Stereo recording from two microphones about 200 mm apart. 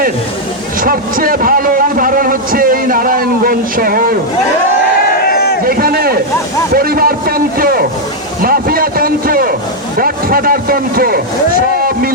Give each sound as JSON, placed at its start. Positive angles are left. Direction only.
{"t": 0.8, "sound": "speech", "side_deg": -45}
{"t": 5.2, "sound": "a sound", "side_deg": 50}
{"t": 5.6, "sound": "speech", "side_deg": -50}